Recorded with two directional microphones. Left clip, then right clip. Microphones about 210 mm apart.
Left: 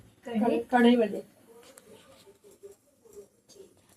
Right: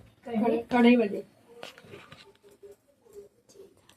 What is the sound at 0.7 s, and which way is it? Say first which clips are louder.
Speech: even; 30° right (ahead or behind).